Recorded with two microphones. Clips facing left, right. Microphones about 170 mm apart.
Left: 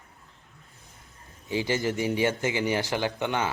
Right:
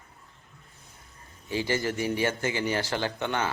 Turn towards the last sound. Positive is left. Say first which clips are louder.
# left 1 dB
turn(degrees=15)  # may be behind; listen again after turning